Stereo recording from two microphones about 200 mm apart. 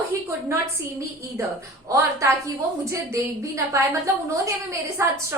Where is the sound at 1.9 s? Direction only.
15° right (ahead or behind).